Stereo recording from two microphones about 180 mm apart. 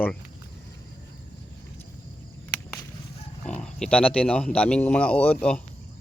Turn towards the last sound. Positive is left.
turn(degrees=5)  # may be behind; listen again after turning